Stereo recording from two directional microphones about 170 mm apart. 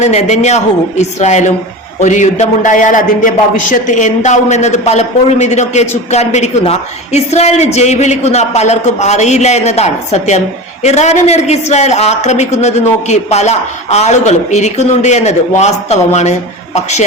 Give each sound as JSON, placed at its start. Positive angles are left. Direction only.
{"t": 0.0, "sound": "a man's voice", "side_deg": 40}